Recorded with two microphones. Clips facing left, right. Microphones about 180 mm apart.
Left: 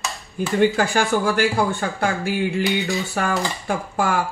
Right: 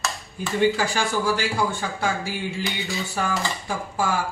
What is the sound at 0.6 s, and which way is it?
Speech, 55° left (ahead or behind).